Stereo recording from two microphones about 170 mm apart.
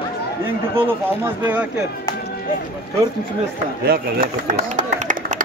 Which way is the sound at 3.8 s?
60° right (ahead or behind).